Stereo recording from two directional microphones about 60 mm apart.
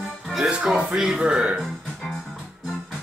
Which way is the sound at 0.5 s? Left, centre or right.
Centre.